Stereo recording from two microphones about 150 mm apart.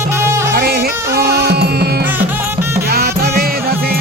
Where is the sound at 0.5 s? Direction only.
90° right.